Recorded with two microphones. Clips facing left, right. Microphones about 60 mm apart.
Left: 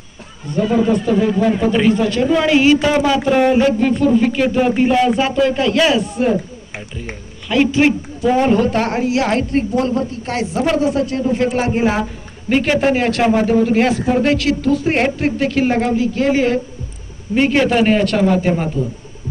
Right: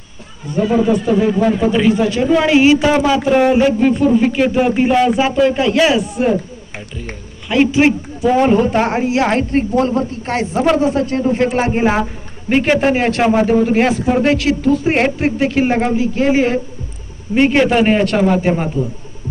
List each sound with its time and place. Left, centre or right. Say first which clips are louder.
0.6 s a man's voice: right 1 dB; centre
2.0 s speech: right 1 dB; centre
7.4 s a man's voice: right 1 dB; centre